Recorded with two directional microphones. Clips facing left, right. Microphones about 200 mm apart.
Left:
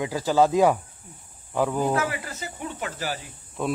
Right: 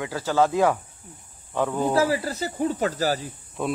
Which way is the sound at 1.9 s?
30° right (ahead or behind).